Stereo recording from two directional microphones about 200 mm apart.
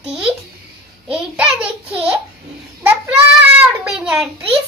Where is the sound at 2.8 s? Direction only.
10° right (ahead or behind).